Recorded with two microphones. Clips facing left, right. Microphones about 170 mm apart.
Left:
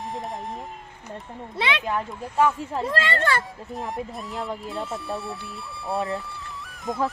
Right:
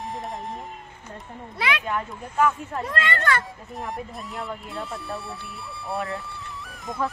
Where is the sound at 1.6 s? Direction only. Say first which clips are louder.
Left 1 dB; 25° left (ahead or behind).